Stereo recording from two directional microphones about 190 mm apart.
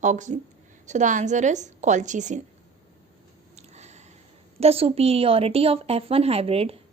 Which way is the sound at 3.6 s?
35° right (ahead or behind).